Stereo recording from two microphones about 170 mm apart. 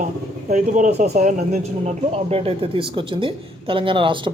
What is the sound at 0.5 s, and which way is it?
A woman's voice, 45° right (ahead or behind).